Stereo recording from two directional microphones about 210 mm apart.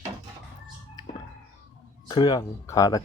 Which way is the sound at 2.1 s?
20° left (ahead or behind).